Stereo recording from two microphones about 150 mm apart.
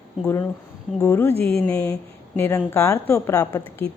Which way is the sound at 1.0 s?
15° left (ahead or behind).